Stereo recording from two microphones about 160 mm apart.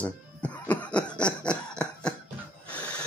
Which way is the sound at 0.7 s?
5° left (ahead or behind).